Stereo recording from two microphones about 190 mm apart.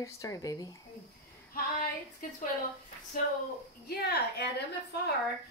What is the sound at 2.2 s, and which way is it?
Speech, 45° left (ahead or behind).